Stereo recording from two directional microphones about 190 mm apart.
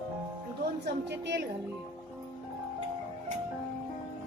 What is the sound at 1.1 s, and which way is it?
Speech, 65° right (ahead or behind).